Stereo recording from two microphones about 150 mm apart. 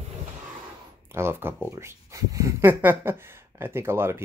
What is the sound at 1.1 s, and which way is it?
Speech, 15° right (ahead or behind).